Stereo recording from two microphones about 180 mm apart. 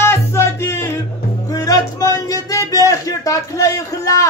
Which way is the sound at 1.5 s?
20° left (ahead or behind).